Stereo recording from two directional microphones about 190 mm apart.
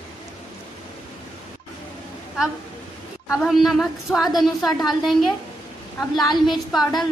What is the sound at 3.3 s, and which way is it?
A woman's voice, centre (ahead or behind).